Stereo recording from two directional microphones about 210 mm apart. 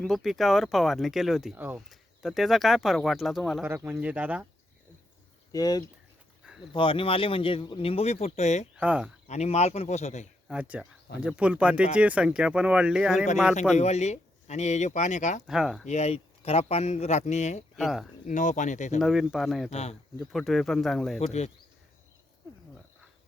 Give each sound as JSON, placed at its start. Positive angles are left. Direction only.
{"t": 0.0, "sound": "speech", "side_deg": 0}
{"t": 3.7, "sound": "speech", "side_deg": -10}
{"t": 5.5, "sound": "speech", "side_deg": 15}
{"t": 8.7, "sound": "speech", "side_deg": -5}
{"t": 9.2, "sound": "speech", "side_deg": 30}
{"t": 10.5, "sound": "speech", "side_deg": -5}
{"t": 13.7, "sound": "speech", "side_deg": 30}
{"t": 15.4, "sound": "speech", "side_deg": 0}
{"t": 15.9, "sound": "speech", "side_deg": 30}
{"t": 17.7, "sound": "speech", "side_deg": 0}
{"t": 18.3, "sound": "speech", "side_deg": 35}
{"t": 18.9, "sound": "speech", "side_deg": 0}
{"t": 19.7, "sound": "speech", "side_deg": 30}
{"t": 20.1, "sound": "speech", "side_deg": 0}